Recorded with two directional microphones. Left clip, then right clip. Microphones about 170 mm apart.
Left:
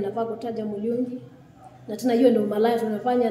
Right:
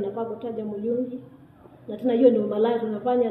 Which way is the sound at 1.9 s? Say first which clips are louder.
Right 1 dB; 20° left (ahead or behind).